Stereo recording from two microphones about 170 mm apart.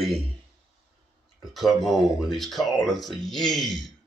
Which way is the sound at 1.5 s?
Centre (ahead or behind).